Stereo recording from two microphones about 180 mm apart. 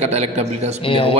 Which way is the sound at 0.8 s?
30° left (ahead or behind).